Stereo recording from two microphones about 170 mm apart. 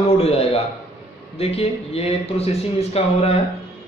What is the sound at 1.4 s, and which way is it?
Speech, 35° left (ahead or behind).